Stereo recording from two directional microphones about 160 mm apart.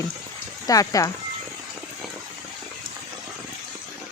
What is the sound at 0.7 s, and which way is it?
Speech, 20° left (ahead or behind).